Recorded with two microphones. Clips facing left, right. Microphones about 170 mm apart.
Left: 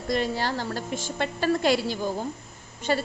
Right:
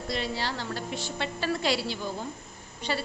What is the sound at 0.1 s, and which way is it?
A woman's voice, 45° left (ahead or behind).